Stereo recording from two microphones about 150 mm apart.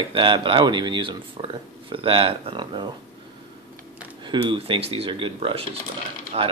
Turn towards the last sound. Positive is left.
turn(degrees=-45)  # may be behind; listen again after turning